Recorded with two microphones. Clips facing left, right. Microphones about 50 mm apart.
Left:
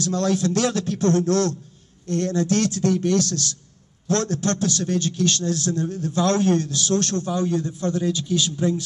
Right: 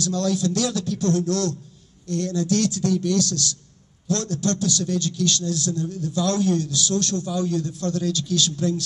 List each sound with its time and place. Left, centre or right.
0.0 s a man's voice: left